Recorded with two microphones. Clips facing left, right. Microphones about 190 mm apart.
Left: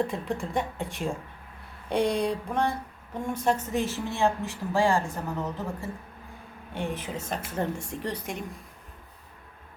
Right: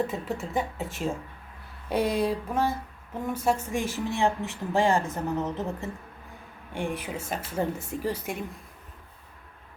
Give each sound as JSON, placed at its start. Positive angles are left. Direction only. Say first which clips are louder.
{"t": 0.0, "sound": "a woman's voice", "louder": "left 1 dB", "side_deg": -5}